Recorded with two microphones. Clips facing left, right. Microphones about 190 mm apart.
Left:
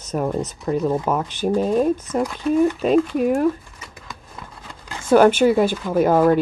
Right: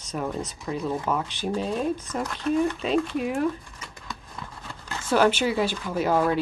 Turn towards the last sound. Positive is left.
turn(degrees=50)  # may be behind; listen again after turning